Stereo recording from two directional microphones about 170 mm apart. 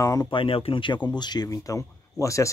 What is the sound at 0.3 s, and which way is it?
Speech, 30° left (ahead or behind).